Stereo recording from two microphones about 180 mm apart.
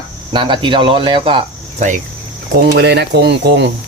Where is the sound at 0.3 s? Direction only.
25° right (ahead or behind).